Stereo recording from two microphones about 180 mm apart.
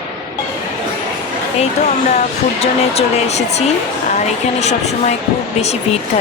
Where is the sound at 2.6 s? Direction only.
35° left (ahead or behind).